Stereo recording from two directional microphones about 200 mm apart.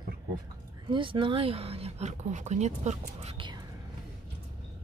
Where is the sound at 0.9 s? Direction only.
25° right (ahead or behind).